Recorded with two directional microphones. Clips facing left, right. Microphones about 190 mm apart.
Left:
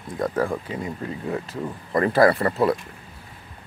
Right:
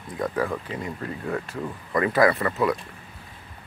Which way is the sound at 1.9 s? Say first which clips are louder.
Left 3 dB; 30° left (ahead or behind).